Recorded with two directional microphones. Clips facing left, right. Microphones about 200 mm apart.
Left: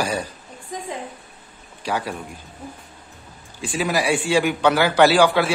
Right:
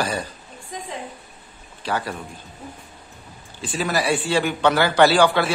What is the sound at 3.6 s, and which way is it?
A man's voice, 10° left (ahead or behind).